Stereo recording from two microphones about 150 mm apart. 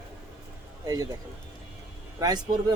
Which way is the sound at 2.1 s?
25° right (ahead or behind).